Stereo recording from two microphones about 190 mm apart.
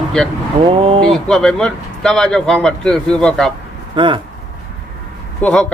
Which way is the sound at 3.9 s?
25° right (ahead or behind).